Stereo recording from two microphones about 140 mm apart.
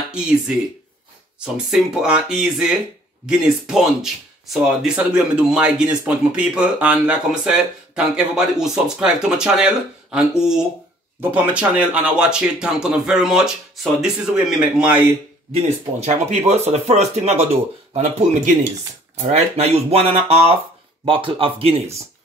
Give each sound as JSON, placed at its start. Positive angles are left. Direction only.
{"t": 1.4, "sound": "speech", "side_deg": -5}
{"t": 15.5, "sound": "speech", "side_deg": -50}
{"t": 17.9, "sound": "speech", "side_deg": -60}
{"t": 19.2, "sound": "speech", "side_deg": -50}